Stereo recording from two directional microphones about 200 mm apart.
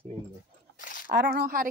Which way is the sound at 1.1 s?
55° right (ahead or behind).